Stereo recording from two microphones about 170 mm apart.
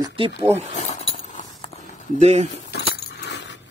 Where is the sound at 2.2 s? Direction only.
40° right (ahead or behind).